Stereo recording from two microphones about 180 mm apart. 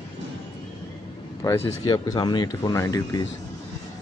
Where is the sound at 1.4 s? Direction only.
15° left (ahead or behind).